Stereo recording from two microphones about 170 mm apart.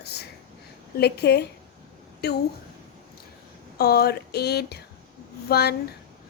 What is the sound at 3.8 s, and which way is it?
Speech, 70° left (ahead or behind).